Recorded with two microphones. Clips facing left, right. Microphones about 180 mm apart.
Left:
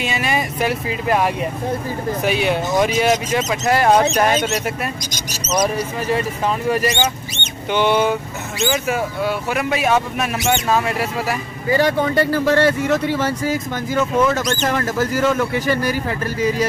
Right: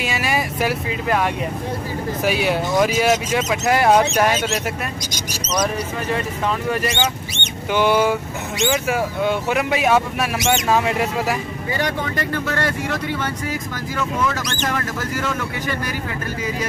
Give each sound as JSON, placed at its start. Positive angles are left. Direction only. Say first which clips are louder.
{"t": 0.0, "sound": "vehicle", "louder": "left 1 dB", "side_deg": -5}
{"t": 2.2, "sound": "speech", "louder": "even", "side_deg": -5}
{"t": 7.7, "sound": "speech", "louder": "even", "side_deg": -5}
{"t": 11.7, "sound": "speech", "louder": "left 8 dB", "side_deg": 35}